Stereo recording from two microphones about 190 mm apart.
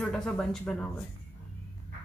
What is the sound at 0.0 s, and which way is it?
Speech, 5° left (ahead or behind).